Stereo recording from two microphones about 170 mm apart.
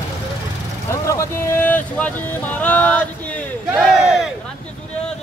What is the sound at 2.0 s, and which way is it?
Speech, 10° left (ahead or behind).